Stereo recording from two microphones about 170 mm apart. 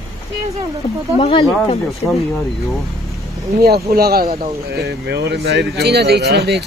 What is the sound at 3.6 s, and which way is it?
Speech, 65° right (ahead or behind).